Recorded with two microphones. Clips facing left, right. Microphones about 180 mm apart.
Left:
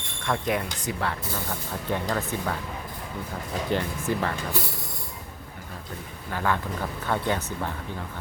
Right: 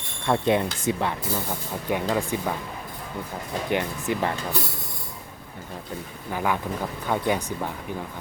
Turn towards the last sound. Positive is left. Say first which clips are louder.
# right 2 dB
turn(degrees=-15)  # may be behind; listen again after turning